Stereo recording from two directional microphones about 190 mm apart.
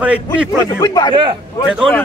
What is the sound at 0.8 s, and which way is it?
Speech, 20° left (ahead or behind).